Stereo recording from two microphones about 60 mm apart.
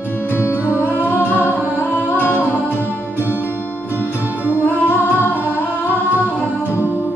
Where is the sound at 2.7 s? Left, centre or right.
Right.